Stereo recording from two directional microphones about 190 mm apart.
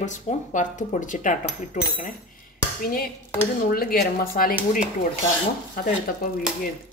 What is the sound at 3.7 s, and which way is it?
Speech, 50° left (ahead or behind).